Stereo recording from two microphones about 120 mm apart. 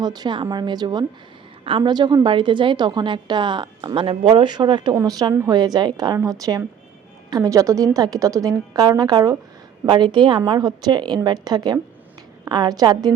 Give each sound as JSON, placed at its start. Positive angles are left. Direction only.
{"t": 0.0, "sound": "a woman's voice", "side_deg": -35}